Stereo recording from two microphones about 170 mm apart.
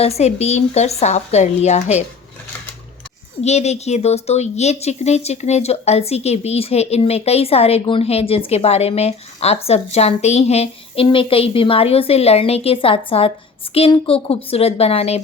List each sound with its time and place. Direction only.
0.0 s a woman's voice: 40° left (ahead or behind)
3.4 s a woman's voice: 40° left (ahead or behind)